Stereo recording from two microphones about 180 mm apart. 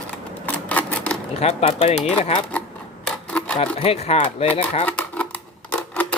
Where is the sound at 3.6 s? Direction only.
35° left (ahead or behind).